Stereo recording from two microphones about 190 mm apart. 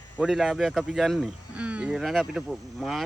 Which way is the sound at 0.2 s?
Centre (ahead or behind).